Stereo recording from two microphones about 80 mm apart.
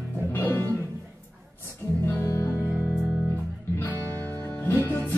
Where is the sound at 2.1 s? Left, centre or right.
Left.